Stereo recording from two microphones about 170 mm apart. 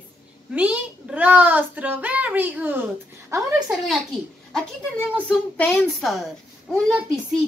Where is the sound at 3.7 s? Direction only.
Centre (ahead or behind).